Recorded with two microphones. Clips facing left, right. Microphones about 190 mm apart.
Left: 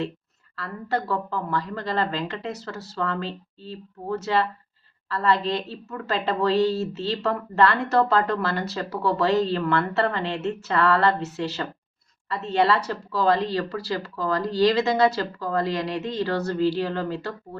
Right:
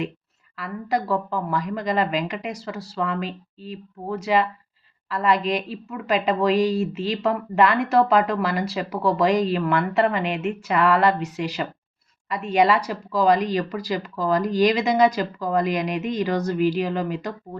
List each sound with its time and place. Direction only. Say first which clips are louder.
0.5 s a woman's voice: right 2 dB; 15° right (ahead or behind)